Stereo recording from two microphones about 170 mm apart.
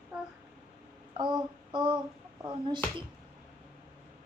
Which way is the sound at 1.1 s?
25° right (ahead or behind).